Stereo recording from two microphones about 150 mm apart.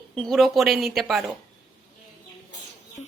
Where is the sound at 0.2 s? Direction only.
Centre (ahead or behind).